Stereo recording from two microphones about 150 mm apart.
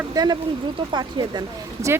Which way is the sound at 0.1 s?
25° right (ahead or behind).